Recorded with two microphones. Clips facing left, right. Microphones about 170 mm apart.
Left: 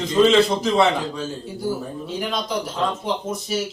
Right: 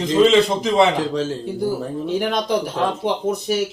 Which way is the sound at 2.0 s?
60° right (ahead or behind).